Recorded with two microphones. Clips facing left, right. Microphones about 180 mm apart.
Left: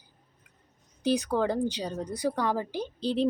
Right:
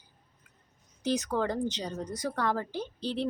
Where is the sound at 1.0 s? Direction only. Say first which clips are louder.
Left 3 dB; 15° left (ahead or behind).